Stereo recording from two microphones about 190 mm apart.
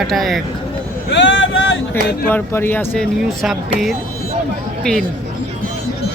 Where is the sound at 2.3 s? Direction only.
10° left (ahead or behind).